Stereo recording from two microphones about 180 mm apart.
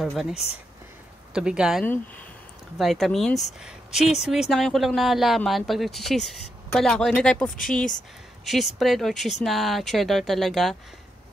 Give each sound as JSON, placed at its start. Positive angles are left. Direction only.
{"t": 0.0, "sound": "speech", "side_deg": 0}
{"t": 0.3, "sound": "speech", "side_deg": 35}
{"t": 1.3, "sound": "speech", "side_deg": -5}
{"t": 3.6, "sound": "a sound", "side_deg": -5}
{"t": 4.2, "sound": "speech", "side_deg": 0}